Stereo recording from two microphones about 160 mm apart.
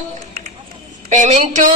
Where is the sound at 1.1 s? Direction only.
50° right (ahead or behind).